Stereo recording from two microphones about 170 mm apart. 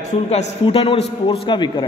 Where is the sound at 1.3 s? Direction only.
30° left (ahead or behind).